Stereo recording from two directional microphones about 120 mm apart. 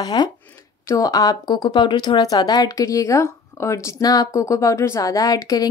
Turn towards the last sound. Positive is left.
turn(degrees=30)  # may be behind; listen again after turning